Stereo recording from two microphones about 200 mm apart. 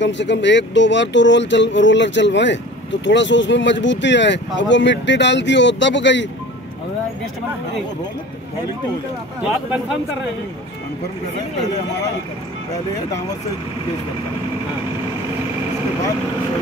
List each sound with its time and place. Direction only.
0.0 s speech: 60° left (ahead or behind)